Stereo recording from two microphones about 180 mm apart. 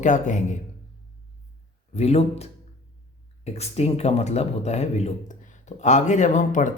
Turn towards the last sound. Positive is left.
turn(degrees=45)  # may be behind; listen again after turning